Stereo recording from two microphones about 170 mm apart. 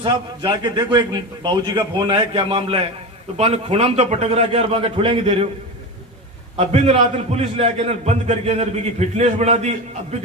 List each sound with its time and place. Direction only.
0.0 s a man's voice: 25° right (ahead or behind)
6.6 s a man's voice: 40° right (ahead or behind)